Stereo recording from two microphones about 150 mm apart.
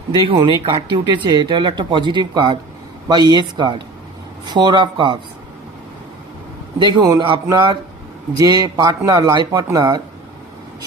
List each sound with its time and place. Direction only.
0.3 s a man's voice: 35° right (ahead or behind)
6.7 s a man's voice: 25° right (ahead or behind)